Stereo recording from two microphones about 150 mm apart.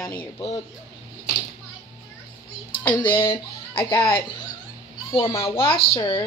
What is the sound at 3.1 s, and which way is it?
Speech, 35° left (ahead or behind).